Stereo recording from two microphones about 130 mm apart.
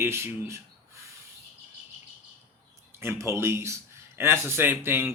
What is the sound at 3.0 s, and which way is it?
A man's voice, 20° right (ahead or behind).